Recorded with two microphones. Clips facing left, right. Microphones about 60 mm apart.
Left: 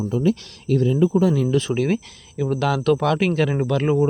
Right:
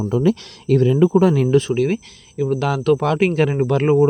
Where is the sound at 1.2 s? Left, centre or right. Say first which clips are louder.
Right 3 dB; right.